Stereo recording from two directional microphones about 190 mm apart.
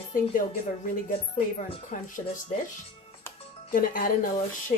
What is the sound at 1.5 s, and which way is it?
Speech, 40° left (ahead or behind).